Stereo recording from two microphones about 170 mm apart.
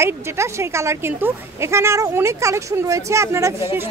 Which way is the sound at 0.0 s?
15° right (ahead or behind).